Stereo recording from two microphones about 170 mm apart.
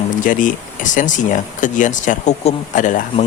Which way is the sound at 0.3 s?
50° left (ahead or behind).